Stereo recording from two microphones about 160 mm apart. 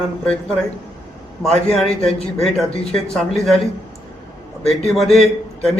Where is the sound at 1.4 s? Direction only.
Centre (ahead or behind).